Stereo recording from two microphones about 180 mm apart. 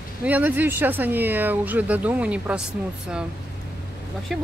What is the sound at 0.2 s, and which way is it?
Speech, 10° right (ahead or behind).